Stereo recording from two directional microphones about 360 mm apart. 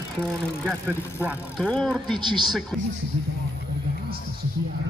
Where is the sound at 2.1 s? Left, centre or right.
Centre.